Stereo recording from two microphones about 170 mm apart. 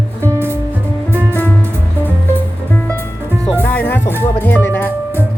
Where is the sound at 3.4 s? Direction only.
10° left (ahead or behind).